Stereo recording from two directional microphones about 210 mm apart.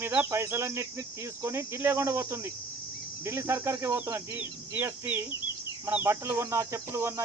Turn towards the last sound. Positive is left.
turn(degrees=-15)  # may be behind; listen again after turning